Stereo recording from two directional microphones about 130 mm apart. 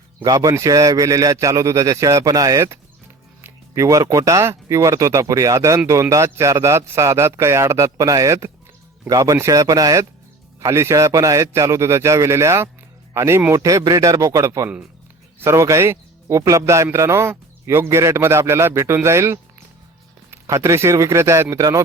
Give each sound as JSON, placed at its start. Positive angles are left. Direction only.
{"t": 0.3, "sound": "a man's voice", "side_deg": -30}